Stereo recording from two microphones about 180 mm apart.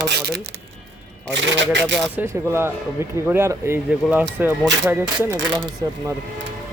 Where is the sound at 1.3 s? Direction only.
85° right.